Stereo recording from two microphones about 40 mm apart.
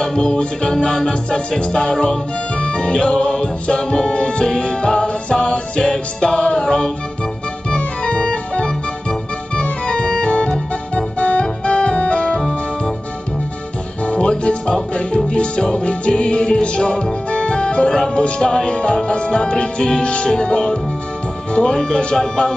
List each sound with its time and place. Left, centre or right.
0.0 s music: centre
11.1 s organ: left
14.0 s music: left